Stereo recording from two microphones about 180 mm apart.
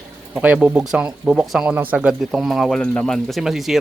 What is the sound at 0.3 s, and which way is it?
Speech, 5° right (ahead or behind).